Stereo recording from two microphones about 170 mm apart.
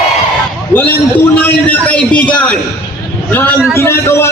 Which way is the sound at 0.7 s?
10° left (ahead or behind).